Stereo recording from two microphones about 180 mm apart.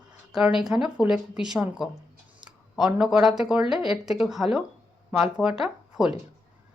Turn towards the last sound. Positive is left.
turn(degrees=0)  # may be behind; listen again after turning